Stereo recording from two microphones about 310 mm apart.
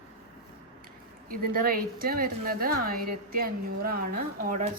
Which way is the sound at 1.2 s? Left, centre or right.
Right.